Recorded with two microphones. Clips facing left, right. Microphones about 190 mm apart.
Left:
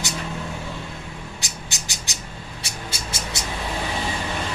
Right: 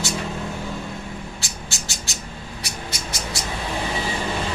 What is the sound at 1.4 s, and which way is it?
Bird, 20° left (ahead or behind).